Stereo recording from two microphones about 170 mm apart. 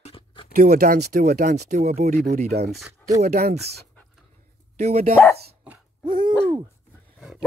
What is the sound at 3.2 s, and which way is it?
Speech, 40° right (ahead or behind).